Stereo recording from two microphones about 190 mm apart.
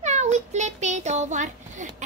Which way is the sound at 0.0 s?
35° right (ahead or behind).